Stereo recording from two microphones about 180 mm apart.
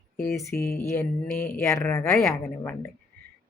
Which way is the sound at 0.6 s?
55° left (ahead or behind).